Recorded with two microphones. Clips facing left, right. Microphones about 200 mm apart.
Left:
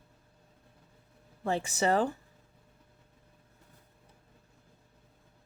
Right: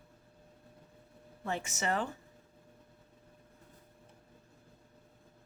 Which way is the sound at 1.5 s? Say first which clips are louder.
Left 7 dB; 35° left (ahead or behind).